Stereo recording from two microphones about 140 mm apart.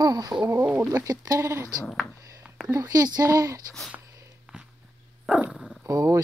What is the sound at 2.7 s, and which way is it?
Speech, 25° right (ahead or behind).